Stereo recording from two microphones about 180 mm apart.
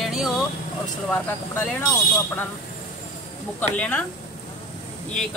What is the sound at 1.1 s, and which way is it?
Speech, 10° left (ahead or behind).